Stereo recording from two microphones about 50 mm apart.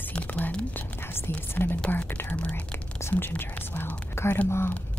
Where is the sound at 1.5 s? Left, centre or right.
Left.